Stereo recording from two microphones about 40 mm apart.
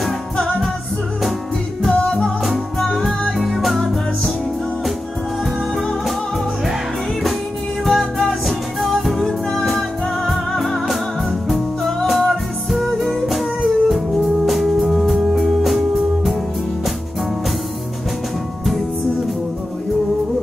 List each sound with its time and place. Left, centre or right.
1.9 s music: left
2.4 s music: centre
5.8 s music: centre
7.8 s music: centre